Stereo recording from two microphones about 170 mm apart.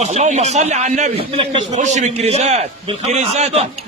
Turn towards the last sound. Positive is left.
turn(degrees=-40)  # may be behind; listen again after turning